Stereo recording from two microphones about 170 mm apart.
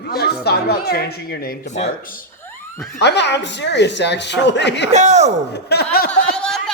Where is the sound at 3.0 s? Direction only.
90° left.